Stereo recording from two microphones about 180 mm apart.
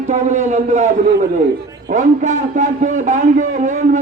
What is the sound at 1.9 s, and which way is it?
A man's voice, 45° right (ahead or behind).